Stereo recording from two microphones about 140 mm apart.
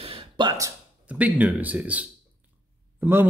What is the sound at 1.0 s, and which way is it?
Speech, 10° right (ahead or behind).